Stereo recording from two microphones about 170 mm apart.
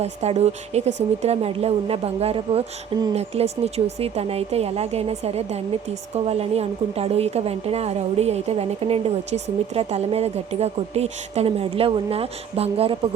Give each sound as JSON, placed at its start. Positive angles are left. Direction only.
{"t": 0.0, "sound": "a woman's voice", "side_deg": -40}